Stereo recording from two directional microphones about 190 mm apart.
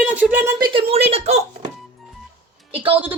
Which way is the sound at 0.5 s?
25° right (ahead or behind).